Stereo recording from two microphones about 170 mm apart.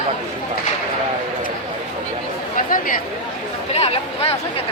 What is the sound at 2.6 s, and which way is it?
Chatter, 55° left (ahead or behind).